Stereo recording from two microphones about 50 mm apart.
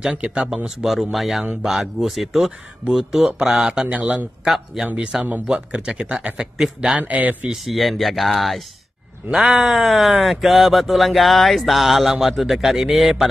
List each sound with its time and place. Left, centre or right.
0.0 s speech: centre
0.7 s speech: centre
3.8 s speech: right
7.0 s speech: right
7.6 s speech: centre
9.4 s speech: centre